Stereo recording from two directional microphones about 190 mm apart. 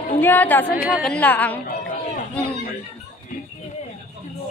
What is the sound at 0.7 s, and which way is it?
Speech, 10° right (ahead or behind).